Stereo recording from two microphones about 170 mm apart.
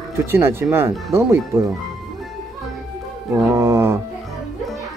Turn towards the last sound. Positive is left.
turn(degrees=-15)  # may be behind; listen again after turning